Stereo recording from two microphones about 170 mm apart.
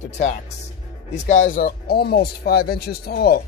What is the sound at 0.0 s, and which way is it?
Speech, 45° left (ahead or behind).